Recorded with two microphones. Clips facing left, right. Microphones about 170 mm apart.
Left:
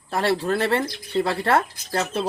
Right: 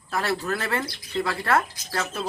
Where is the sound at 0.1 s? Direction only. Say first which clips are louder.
Left 5 dB; 30° left (ahead or behind).